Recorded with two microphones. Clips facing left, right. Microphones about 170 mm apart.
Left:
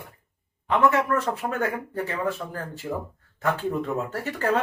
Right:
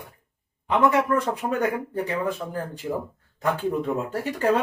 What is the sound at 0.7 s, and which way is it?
Speech, 15° right (ahead or behind).